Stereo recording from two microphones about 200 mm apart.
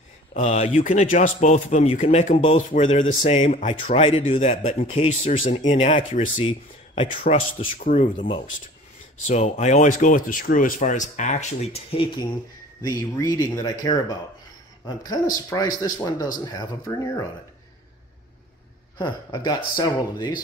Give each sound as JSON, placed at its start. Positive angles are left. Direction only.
{"t": 0.3, "sound": "speech", "side_deg": 35}
{"t": 7.8, "sound": "speech", "side_deg": 40}
{"t": 12.8, "sound": "speech", "side_deg": 15}
{"t": 18.9, "sound": "speech", "side_deg": 20}